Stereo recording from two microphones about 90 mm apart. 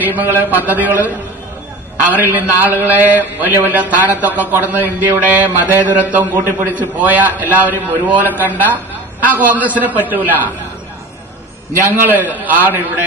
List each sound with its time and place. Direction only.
0.0 s a man's voice: 20° right (ahead or behind)
2.1 s a man's voice: 20° right (ahead or behind)
11.9 s a man's voice: 20° right (ahead or behind)